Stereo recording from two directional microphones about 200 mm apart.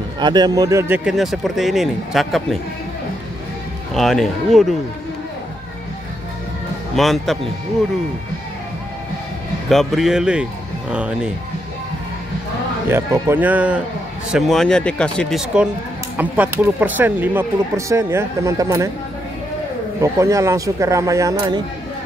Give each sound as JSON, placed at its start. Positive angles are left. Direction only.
{"t": 0.2, "sound": "speech", "side_deg": -20}
{"t": 3.9, "sound": "speech", "side_deg": 0}
{"t": 7.0, "sound": "speech", "side_deg": 0}
{"t": 9.7, "sound": "speech", "side_deg": 0}
{"t": 12.8, "sound": "speech", "side_deg": -10}
{"t": 20.0, "sound": "speech", "side_deg": -15}